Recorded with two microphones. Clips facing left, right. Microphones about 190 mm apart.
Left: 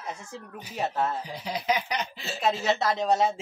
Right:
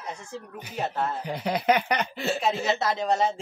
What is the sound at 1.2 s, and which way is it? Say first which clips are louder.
Speech: right 5 dB; 60° right (ahead or behind).